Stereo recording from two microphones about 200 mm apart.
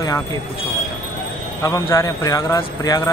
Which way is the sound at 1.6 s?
15° left (ahead or behind).